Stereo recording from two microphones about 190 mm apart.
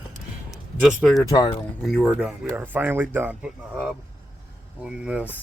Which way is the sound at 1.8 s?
Centre (ahead or behind).